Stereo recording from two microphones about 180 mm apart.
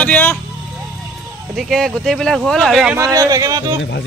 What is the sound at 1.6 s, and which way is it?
Speech, centre (ahead or behind).